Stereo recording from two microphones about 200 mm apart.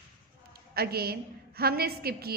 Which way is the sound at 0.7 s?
50° right (ahead or behind).